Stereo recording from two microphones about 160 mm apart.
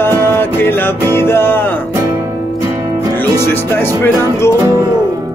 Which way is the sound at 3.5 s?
15° left (ahead or behind).